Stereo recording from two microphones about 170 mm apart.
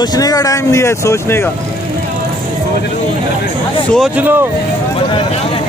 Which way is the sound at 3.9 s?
10° right (ahead or behind).